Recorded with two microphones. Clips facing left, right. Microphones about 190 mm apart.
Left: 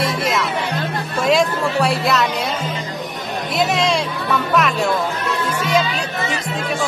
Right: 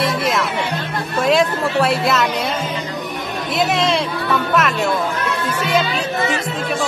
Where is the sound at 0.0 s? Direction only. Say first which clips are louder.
Right 1 dB; centre (ahead or behind).